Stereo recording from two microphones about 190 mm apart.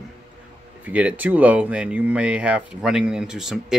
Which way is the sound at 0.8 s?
10° right (ahead or behind).